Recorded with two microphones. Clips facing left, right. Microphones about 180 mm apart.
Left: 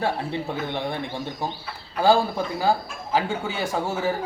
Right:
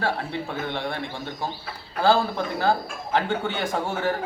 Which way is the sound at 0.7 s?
20° left (ahead or behind).